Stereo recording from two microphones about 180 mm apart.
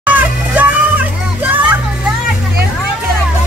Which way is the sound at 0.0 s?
10° right (ahead or behind).